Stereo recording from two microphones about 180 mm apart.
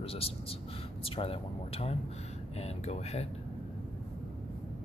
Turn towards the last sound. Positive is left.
turn(degrees=35)  # may be behind; listen again after turning